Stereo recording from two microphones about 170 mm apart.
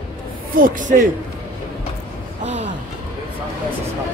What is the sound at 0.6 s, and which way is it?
Speech, 50° right (ahead or behind).